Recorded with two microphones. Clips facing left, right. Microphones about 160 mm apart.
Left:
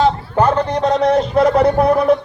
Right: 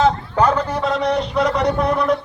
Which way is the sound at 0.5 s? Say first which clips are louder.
Left 4 dB; 40° left (ahead or behind).